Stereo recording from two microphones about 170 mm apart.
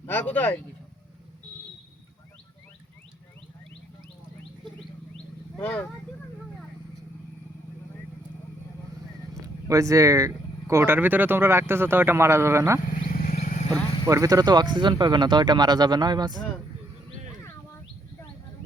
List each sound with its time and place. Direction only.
0.1 s speech: 10° left (ahead or behind)
5.1 s wild animals: 10° left (ahead or behind)
9.3 s speech: 20° right (ahead or behind)
13.1 s wild animals: 55° left (ahead or behind)
14.1 s speech: 20° right (ahead or behind)